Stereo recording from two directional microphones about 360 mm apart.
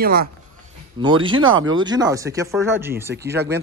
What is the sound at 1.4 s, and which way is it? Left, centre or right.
Speech, right.